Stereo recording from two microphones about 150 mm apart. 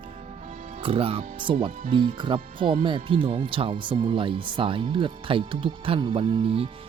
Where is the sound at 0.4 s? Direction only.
50° right (ahead or behind).